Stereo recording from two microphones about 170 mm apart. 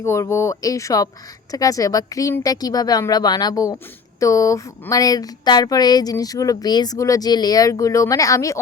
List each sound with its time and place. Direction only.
0.0 s speech: 15° left (ahead or behind)